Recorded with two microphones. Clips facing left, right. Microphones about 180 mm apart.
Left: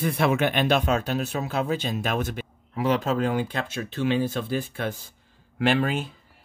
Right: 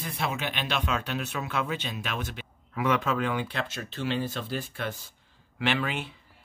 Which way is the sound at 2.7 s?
35° left (ahead or behind).